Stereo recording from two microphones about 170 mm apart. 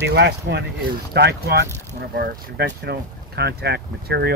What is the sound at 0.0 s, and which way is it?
Speech, 85° right.